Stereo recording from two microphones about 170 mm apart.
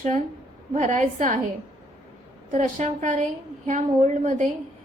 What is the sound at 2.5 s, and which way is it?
A woman's voice, 45° right (ahead or behind).